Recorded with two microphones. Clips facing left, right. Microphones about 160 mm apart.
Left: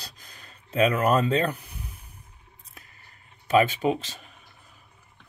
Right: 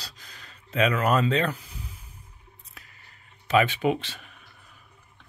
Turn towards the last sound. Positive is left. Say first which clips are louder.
# even
turn(degrees=40)  # may be behind; listen again after turning